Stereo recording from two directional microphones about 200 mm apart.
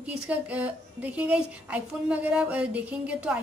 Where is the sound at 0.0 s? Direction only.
5° right (ahead or behind).